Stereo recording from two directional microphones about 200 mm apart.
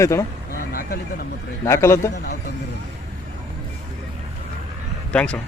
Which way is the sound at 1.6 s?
15° left (ahead or behind).